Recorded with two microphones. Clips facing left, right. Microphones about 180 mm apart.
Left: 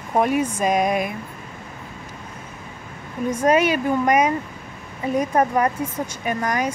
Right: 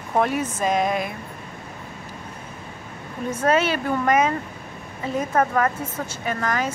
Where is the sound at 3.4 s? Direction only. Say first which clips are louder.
Left 3 dB; 15° left (ahead or behind).